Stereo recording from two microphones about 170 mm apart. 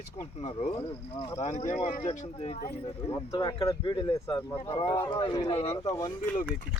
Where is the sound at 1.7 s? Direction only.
45° left (ahead or behind).